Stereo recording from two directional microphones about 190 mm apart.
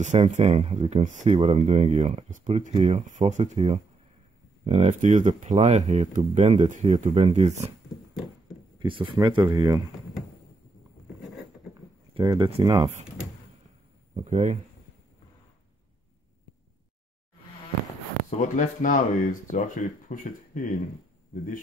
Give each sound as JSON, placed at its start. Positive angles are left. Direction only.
{"t": 0.0, "sound": "speech", "side_deg": -40}
{"t": 8.7, "sound": "speech", "side_deg": -25}
{"t": 12.1, "sound": "speech", "side_deg": -25}
{"t": 14.1, "sound": "speech", "side_deg": -40}
{"t": 18.4, "sound": "speech", "side_deg": 40}